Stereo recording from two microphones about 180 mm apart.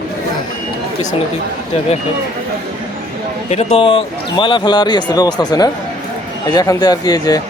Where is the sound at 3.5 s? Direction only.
35° left (ahead or behind).